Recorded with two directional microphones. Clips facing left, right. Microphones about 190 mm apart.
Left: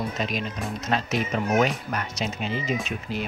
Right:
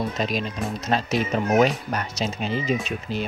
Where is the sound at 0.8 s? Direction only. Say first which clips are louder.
Right 2 dB; 35° right (ahead or behind).